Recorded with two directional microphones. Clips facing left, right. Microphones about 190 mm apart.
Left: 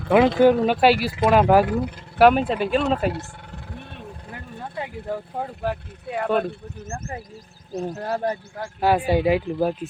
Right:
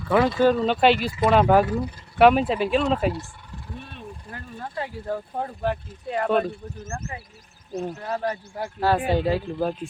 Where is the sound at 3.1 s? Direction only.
65° left (ahead or behind).